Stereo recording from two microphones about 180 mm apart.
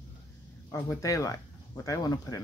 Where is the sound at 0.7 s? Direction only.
15° left (ahead or behind).